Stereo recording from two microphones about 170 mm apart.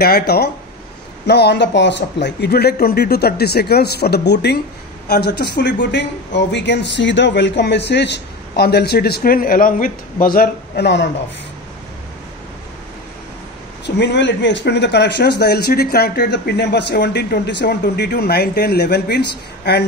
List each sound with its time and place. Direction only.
0.0 s a man's voice: 70° left (ahead or behind)
13.8 s speech: 90° left